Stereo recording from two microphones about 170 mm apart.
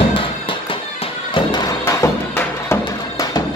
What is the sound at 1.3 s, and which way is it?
Music, 25° left (ahead or behind).